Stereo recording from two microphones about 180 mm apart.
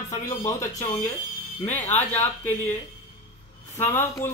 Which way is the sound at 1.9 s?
10° left (ahead or behind).